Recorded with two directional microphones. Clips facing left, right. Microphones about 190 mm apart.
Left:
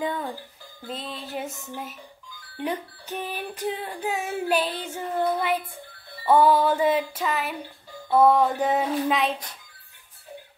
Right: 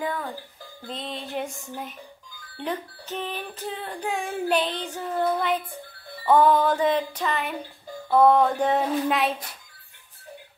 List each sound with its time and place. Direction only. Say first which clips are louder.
0.0 s speech: left 1 dB; 20° left (ahead or behind)
0.8 s music: right 1 dB; centre (ahead or behind)
2.5 s a sound: left 1 dB; 10° left (ahead or behind)
8.1 s music: right 1 dB; 5° left (ahead or behind)